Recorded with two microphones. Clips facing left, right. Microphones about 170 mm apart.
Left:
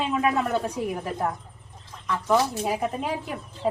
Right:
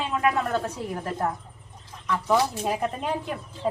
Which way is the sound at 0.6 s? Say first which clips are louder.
Left 3 dB; 15° left (ahead or behind).